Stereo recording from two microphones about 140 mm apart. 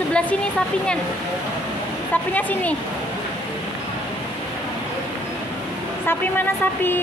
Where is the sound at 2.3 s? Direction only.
10° left (ahead or behind).